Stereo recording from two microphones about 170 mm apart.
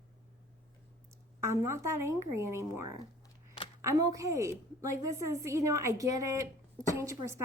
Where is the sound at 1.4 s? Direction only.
15° right (ahead or behind).